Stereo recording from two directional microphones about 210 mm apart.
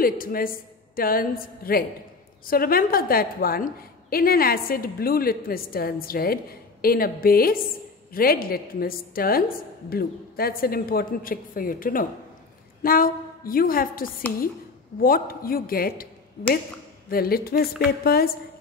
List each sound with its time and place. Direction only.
0.0 s a woman's voice: 45° left (ahead or behind)